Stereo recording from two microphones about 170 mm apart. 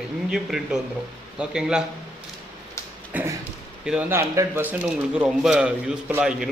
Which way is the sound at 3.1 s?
10° right (ahead or behind).